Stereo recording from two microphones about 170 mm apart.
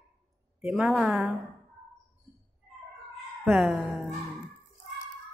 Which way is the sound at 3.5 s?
5° right (ahead or behind).